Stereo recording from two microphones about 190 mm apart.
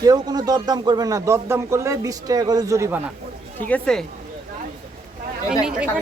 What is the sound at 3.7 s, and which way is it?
Speech, 5° left (ahead or behind).